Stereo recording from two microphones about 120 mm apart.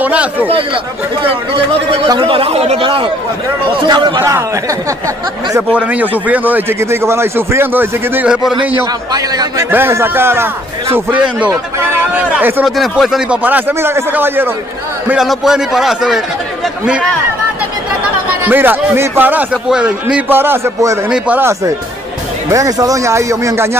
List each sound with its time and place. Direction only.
0.0 s a man's voice: 10° right (ahead or behind)
1.2 s speech: 50° right (ahead or behind)
2.8 s a man's voice: 45° right (ahead or behind)
4.2 s speech: 25° right (ahead or behind)
5.8 s a man's voice: 10° right (ahead or behind)
9.1 s a man's voice: 30° right (ahead or behind)
9.7 s a man's voice: 20° right (ahead or behind)
12.6 s a man's voice: centre (ahead or behind); by 14.5 s 15° right (ahead or behind)
15.0 s a man's voice: 5° right (ahead or behind)
18.4 s a man's voice: 15° right (ahead or behind)
22.5 s speech: 30° right (ahead or behind)